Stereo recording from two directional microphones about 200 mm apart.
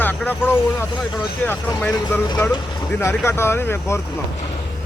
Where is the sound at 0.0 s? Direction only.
10° left (ahead or behind).